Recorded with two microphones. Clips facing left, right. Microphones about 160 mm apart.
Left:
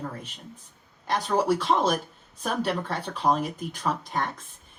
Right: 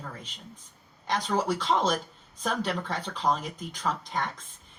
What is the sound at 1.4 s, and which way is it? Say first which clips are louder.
Speech: left 4 dB; 55° left (ahead or behind).